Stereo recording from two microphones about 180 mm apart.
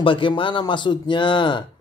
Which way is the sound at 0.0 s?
30° left (ahead or behind).